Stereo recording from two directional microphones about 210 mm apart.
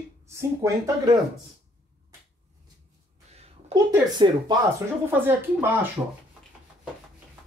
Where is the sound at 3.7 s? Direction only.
20° right (ahead or behind).